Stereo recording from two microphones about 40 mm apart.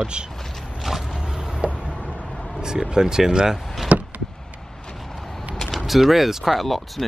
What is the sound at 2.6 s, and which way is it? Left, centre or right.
Speech, centre.